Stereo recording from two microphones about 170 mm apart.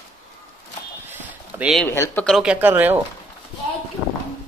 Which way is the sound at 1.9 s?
15° left (ahead or behind).